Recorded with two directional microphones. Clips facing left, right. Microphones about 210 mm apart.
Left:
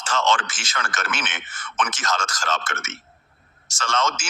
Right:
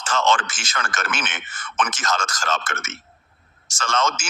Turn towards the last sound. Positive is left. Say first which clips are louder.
# right 1 dB
turn(degrees=-50)  # may be behind; listen again after turning